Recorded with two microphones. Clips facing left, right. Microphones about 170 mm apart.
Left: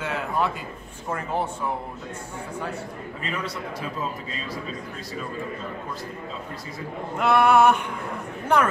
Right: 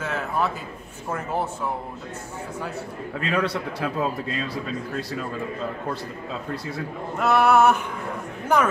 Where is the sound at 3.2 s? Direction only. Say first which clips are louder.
Right 7 dB; 70° right (ahead or behind).